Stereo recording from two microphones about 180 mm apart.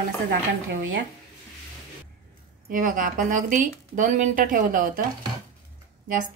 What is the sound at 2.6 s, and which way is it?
Speech, 50° right (ahead or behind).